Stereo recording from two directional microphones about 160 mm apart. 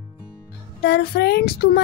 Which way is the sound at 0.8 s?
90° left.